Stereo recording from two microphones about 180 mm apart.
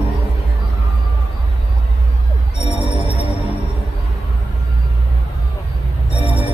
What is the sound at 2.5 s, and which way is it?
Music, 35° left (ahead or behind).